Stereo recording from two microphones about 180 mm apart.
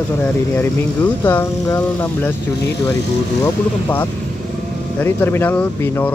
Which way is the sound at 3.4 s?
10° left (ahead or behind).